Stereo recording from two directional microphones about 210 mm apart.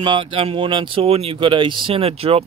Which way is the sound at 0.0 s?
25° right (ahead or behind).